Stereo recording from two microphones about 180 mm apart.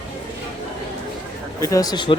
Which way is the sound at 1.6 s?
20° left (ahead or behind).